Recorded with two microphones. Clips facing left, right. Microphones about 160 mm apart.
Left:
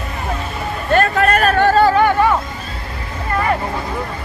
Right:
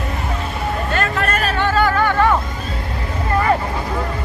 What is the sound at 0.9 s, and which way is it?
Hubbub, 50° left (ahead or behind).